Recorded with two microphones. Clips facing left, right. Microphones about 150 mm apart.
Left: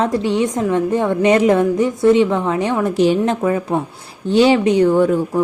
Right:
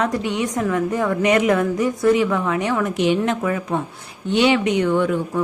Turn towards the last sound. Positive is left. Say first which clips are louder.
# left 5 dB
turn(degrees=35)  # may be behind; listen again after turning